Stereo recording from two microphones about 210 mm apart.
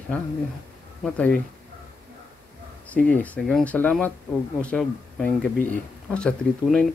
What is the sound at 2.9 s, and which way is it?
Speech, 5° left (ahead or behind).